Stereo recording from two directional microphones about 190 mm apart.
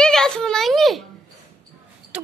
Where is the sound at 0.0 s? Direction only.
5° left (ahead or behind).